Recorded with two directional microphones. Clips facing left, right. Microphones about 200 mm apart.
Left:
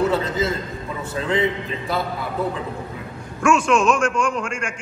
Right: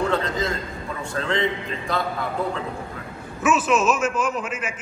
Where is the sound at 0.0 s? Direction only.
5° left (ahead or behind).